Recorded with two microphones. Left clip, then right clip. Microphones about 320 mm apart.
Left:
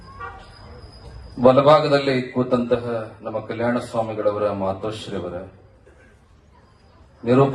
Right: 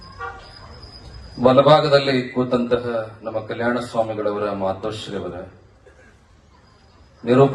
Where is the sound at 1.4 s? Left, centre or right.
Right.